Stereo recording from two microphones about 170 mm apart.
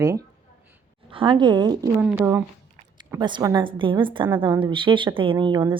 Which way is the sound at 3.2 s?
25° right (ahead or behind).